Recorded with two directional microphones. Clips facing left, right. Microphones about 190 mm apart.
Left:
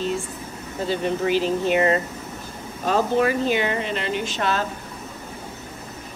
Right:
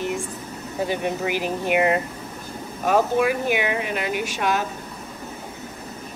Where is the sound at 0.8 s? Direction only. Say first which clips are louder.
Left 3 dB; 15° right (ahead or behind).